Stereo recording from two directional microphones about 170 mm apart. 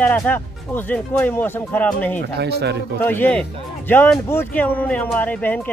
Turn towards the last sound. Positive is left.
turn(degrees=10)  # may be behind; listen again after turning